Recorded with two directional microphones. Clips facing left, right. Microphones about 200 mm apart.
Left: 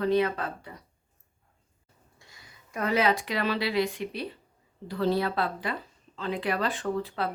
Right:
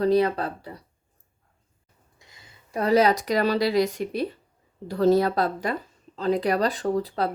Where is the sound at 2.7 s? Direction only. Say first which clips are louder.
Right 6 dB; 35° right (ahead or behind).